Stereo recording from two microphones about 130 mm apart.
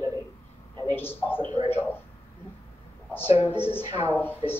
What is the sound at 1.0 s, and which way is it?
Speech, 15° left (ahead or behind).